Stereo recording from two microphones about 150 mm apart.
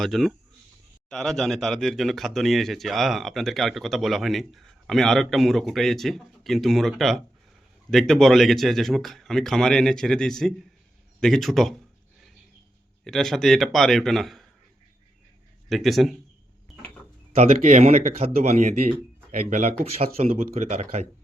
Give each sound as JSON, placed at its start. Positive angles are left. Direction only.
{"t": 0.0, "sound": "speech", "side_deg": 0}
{"t": 13.1, "sound": "speech", "side_deg": 0}
{"t": 15.7, "sound": "speech", "side_deg": 0}
{"t": 17.3, "sound": "speech", "side_deg": -45}
{"t": 19.8, "sound": "speech", "side_deg": -40}